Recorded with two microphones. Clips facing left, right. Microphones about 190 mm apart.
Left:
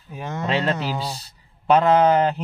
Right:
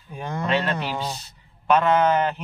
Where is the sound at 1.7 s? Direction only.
30° left (ahead or behind).